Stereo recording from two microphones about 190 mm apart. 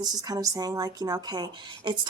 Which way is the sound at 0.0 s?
20° right (ahead or behind).